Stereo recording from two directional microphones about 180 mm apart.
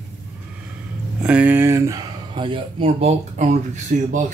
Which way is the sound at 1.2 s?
10° right (ahead or behind).